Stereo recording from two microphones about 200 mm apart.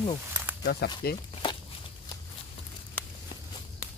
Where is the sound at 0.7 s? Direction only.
55° left (ahead or behind).